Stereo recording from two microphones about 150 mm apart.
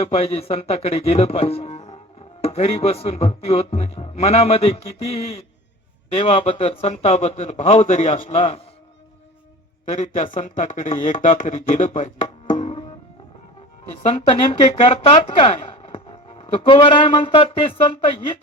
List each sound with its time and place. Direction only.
0.0 s speech: 40° left (ahead or behind)
8.4 s speech: 40° left (ahead or behind)
9.9 s speech: 50° left (ahead or behind)
10.3 s speech: 60° left (ahead or behind)
12.5 s music: 40° left (ahead or behind)
14.0 s speech: 35° left (ahead or behind)